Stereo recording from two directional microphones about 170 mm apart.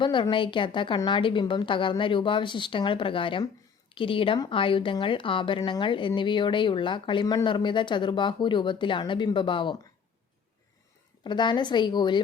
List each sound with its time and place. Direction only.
0.0 s a woman's voice: 30° left (ahead or behind)
11.2 s a woman's voice: 25° left (ahead or behind)